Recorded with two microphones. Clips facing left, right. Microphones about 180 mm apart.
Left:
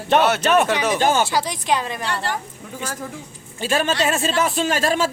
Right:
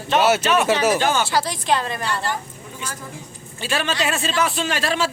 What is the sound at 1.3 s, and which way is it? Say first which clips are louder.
Speech: even; 15° left (ahead or behind).